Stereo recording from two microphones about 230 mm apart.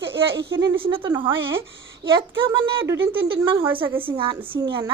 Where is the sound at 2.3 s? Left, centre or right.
Right.